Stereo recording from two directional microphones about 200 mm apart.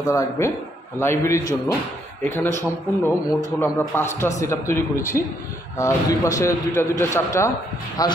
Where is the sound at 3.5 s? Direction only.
10° left (ahead or behind).